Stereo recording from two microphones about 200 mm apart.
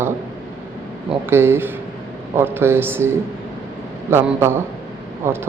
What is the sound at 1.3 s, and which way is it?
A man's voice, 10° right (ahead or behind).